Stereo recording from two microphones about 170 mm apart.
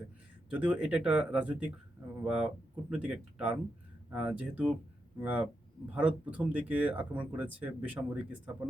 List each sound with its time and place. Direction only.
0.5 s speech: 10° right (ahead or behind)